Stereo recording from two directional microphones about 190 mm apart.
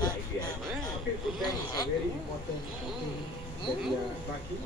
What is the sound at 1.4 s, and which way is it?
Speech, 20° left (ahead or behind).